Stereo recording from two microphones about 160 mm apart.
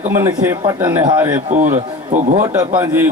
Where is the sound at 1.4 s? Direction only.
50° right (ahead or behind).